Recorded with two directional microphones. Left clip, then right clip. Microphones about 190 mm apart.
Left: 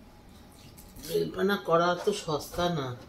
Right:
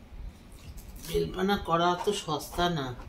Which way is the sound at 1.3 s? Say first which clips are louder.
Left 3 dB; 30° right (ahead or behind).